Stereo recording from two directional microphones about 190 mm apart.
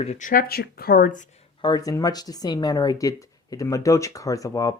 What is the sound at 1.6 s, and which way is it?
Speech, 20° left (ahead or behind).